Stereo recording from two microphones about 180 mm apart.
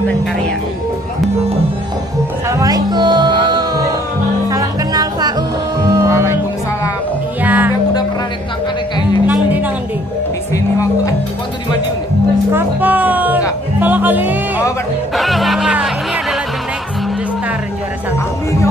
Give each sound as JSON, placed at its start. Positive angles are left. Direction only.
{"t": 2.5, "sound": "music", "side_deg": -20}
{"t": 7.4, "sound": "music", "side_deg": -10}
{"t": 10.5, "sound": "music", "side_deg": 15}
{"t": 12.5, "sound": "music", "side_deg": -10}